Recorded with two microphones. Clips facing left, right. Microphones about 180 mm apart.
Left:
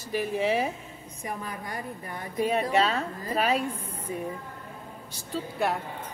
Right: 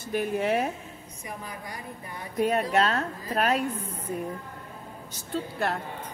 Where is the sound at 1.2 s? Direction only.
55° left (ahead or behind).